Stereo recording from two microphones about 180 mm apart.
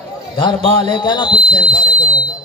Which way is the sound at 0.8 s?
25° left (ahead or behind).